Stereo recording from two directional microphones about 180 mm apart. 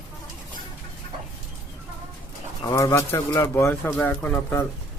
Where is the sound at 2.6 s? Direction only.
20° left (ahead or behind).